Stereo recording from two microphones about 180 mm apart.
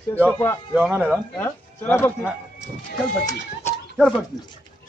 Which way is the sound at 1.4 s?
15° left (ahead or behind).